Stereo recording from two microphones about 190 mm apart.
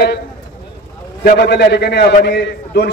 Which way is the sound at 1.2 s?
60° left (ahead or behind).